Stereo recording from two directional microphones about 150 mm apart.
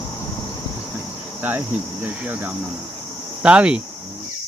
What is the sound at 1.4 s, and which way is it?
Speech, 10° right (ahead or behind).